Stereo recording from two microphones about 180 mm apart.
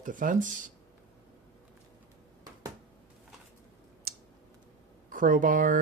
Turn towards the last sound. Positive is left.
turn(degrees=-50)  # may be behind; listen again after turning